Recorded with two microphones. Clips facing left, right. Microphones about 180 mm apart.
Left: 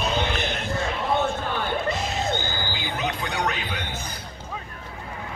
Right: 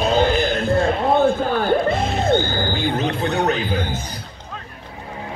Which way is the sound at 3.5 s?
35° right (ahead or behind).